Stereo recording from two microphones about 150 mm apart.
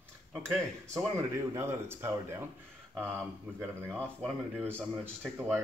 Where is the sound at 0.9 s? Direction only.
20° right (ahead or behind).